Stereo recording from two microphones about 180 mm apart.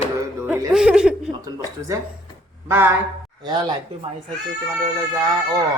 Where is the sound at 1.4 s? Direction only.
20° right (ahead or behind).